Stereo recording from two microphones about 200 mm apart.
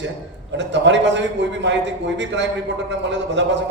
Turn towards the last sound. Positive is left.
turn(degrees=-60)  # may be behind; listen again after turning